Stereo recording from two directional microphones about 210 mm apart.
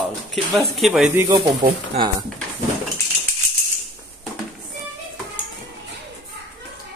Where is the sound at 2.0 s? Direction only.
30° right (ahead or behind).